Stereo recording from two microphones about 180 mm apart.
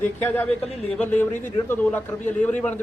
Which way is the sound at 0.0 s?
10° left (ahead or behind).